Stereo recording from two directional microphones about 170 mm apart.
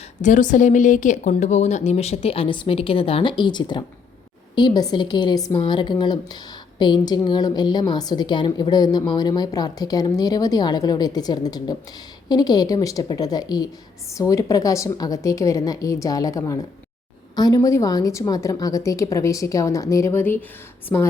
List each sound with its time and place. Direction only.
0.2 s a woman's voice: 50° left (ahead or behind); by 21.1 s 10° left (ahead or behind)